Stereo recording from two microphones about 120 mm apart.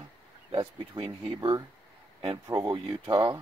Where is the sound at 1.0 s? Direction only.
45° right (ahead or behind).